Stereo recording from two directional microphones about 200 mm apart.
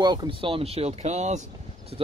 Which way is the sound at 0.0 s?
20° right (ahead or behind).